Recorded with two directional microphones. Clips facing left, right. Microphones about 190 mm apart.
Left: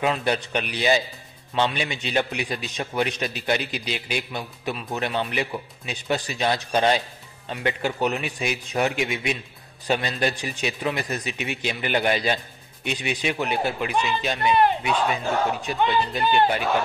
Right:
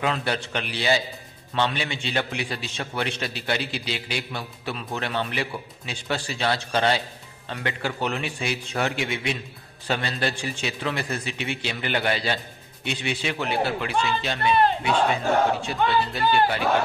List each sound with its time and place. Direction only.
0.0 s a man's voice: 15° left (ahead or behind)